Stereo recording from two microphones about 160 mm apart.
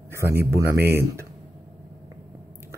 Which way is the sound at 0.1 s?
15° right (ahead or behind).